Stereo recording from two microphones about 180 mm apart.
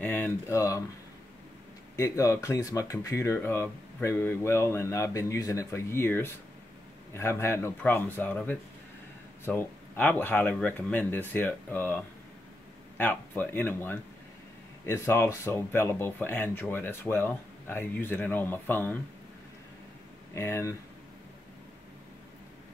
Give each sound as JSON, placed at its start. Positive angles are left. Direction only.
{"t": 0.0, "sound": "speech", "side_deg": 10}
{"t": 2.0, "sound": "speech", "side_deg": 15}
{"t": 20.3, "sound": "speech", "side_deg": 15}